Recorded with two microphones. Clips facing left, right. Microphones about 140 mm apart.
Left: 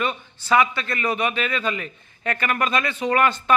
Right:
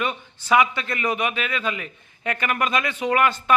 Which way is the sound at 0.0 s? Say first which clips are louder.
Left 1 dB; 15° right (ahead or behind).